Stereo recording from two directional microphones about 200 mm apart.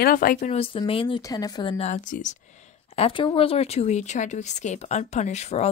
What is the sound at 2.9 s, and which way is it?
Speech, 25° left (ahead or behind).